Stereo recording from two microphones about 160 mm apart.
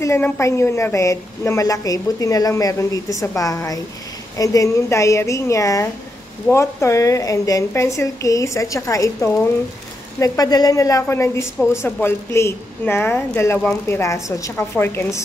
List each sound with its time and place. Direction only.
0.0 s a woman's voice: 15° left (ahead or behind)